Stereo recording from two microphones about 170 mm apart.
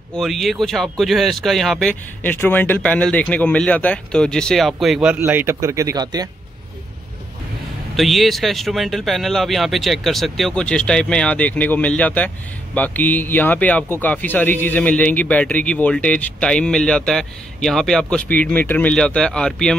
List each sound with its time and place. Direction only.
0.2 s speech: centre (ahead or behind)
5.2 s speech: 15° right (ahead or behind)
7.9 s a man's voice: centre (ahead or behind)